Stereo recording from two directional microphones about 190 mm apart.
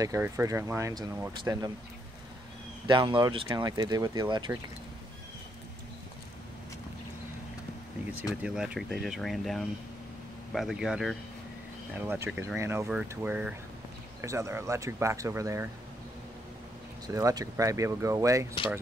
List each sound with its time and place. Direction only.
0.0 s speech: 15° right (ahead or behind)
2.9 s speech: 25° right (ahead or behind)
8.4 s speech: 5° right (ahead or behind)
17.1 s speech: 20° right (ahead or behind)